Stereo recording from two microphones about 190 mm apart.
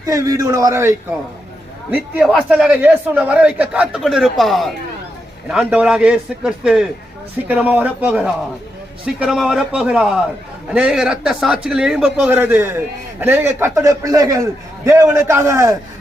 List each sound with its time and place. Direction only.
0.0 s a man's voice: 20° right (ahead or behind)